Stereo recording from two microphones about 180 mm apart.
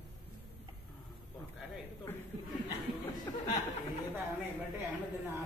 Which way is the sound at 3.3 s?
15° left (ahead or behind).